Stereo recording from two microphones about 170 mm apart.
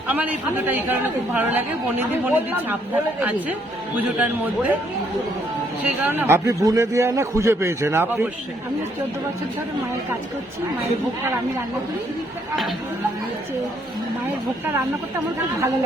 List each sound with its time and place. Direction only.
0.1 s a woman's voice: 10° right (ahead or behind)
6.0 s a woman's voice: 10° right (ahead or behind)